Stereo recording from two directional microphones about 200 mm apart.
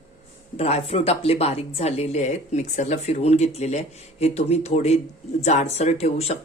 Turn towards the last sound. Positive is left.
turn(degrees=30)  # may be behind; listen again after turning